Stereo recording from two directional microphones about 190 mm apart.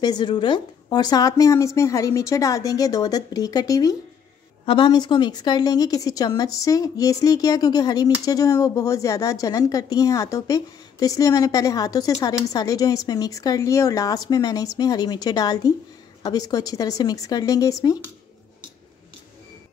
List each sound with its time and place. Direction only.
0.0 s a woman's voice: 20° left (ahead or behind)